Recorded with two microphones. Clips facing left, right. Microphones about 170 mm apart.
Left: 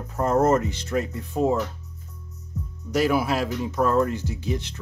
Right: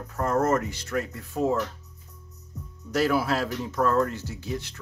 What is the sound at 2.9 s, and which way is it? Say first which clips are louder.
Speech: left 2 dB; 15° left (ahead or behind).